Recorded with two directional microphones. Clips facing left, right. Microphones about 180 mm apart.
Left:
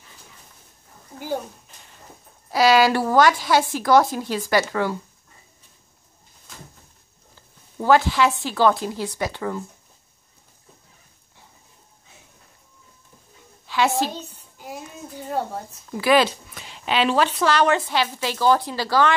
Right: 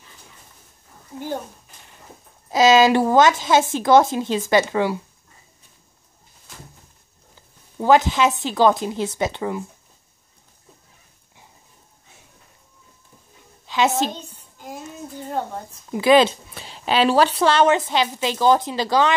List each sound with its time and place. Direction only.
2.5 s a woman's voice: 20° right (ahead or behind)
7.8 s a woman's voice: 20° right (ahead or behind)
13.7 s a woman's voice: 20° right (ahead or behind)
14.3 s speech: 10° left (ahead or behind)
15.7 s a woman's voice: 20° right (ahead or behind)